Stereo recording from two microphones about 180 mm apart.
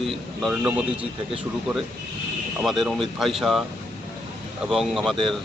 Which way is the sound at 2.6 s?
Centre (ahead or behind).